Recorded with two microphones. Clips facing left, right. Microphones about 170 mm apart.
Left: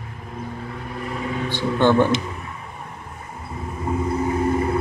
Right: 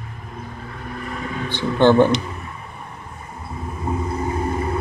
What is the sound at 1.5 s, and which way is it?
Speech, 20° right (ahead or behind).